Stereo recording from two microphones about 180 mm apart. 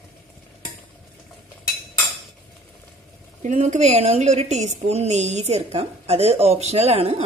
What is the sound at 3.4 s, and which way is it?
A woman's voice, 40° right (ahead or behind).